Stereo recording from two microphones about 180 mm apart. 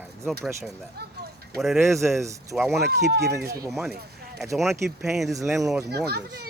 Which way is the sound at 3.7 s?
Centre (ahead or behind).